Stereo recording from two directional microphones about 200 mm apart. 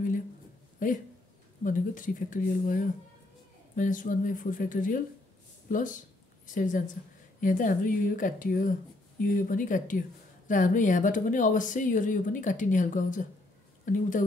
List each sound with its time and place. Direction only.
0.7 s a woman's voice: 40° left (ahead or behind)